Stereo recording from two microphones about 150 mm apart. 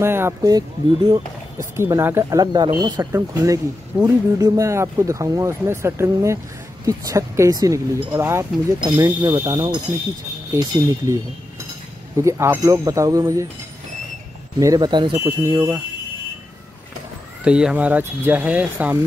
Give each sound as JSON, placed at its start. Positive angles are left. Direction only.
{"t": 0.0, "sound": "speech", "side_deg": -15}
{"t": 1.8, "sound": "speech", "side_deg": -20}
{"t": 12.2, "sound": "speech", "side_deg": -20}
{"t": 14.6, "sound": "speech", "side_deg": -25}
{"t": 15.4, "sound": "speech", "side_deg": -15}
{"t": 17.5, "sound": "speech", "side_deg": -5}